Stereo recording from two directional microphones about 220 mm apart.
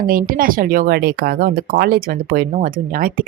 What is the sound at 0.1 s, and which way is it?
Speech, 40° right (ahead or behind).